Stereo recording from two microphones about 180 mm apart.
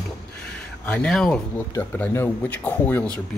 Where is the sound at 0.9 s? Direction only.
5° left (ahead or behind).